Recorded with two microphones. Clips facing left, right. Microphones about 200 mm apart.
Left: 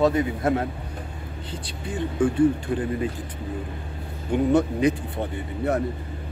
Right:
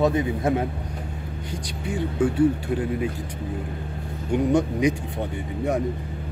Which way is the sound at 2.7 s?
10° right (ahead or behind).